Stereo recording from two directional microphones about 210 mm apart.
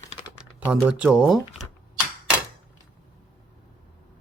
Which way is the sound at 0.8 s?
5° right (ahead or behind).